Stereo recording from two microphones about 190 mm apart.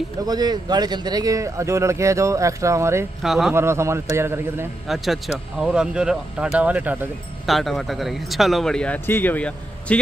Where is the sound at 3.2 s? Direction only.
Centre (ahead or behind).